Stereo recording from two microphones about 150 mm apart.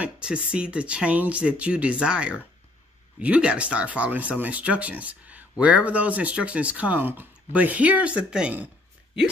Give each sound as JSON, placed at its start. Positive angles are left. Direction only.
{"t": 0.0, "sound": "speech", "side_deg": -5}